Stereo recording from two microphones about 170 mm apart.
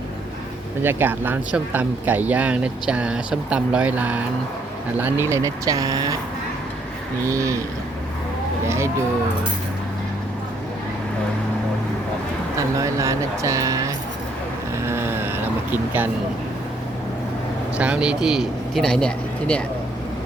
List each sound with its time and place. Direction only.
0.8 s speech: 10° right (ahead or behind)
7.3 s speech: 20° right (ahead or behind)
12.5 s speech: 20° right (ahead or behind)
14.8 s vehicle: 15° right (ahead or behind)
17.7 s speech: 5° right (ahead or behind)